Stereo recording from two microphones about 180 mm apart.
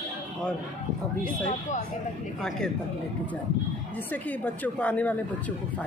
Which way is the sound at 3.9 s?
10° left (ahead or behind).